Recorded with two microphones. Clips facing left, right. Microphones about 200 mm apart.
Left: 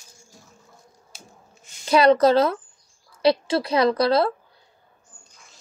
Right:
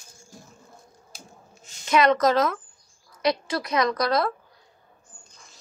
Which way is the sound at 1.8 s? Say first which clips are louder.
Left 4 dB; 35° left (ahead or behind).